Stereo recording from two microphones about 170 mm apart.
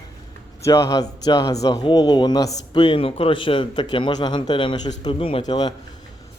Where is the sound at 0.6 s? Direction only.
20° left (ahead or behind).